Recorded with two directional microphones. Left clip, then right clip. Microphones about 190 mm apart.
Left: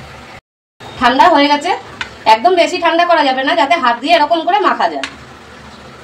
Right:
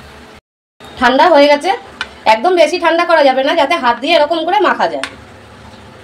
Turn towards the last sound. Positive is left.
turn(degrees=-45)  # may be behind; listen again after turning